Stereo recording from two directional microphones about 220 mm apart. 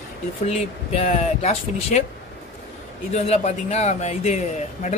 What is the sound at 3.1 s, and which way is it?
Speech, 30° left (ahead or behind).